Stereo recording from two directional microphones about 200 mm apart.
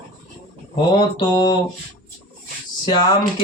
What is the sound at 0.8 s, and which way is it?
Mantra, 20° left (ahead or behind).